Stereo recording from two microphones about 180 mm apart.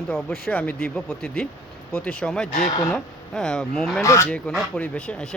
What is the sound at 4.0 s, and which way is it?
Speech, 15° left (ahead or behind).